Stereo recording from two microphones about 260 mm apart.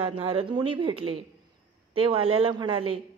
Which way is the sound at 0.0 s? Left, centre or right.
Right.